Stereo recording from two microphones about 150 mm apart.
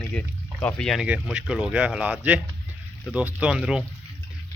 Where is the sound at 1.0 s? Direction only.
5° right (ahead or behind).